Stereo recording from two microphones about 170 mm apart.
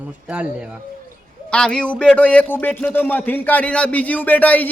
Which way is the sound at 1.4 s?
5° left (ahead or behind).